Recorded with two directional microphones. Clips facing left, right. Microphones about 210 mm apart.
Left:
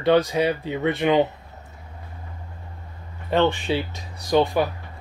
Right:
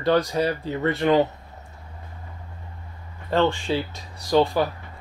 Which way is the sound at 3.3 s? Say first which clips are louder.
Left 1 dB; 20° left (ahead or behind).